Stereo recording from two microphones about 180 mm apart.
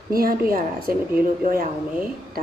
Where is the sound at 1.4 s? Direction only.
50° right (ahead or behind).